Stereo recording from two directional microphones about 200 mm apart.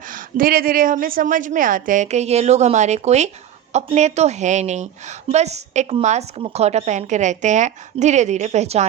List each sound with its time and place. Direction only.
0.1 s a woman's voice: 45° right (ahead or behind)